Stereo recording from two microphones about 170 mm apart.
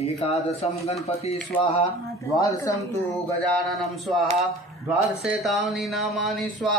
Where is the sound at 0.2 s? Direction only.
40° left (ahead or behind).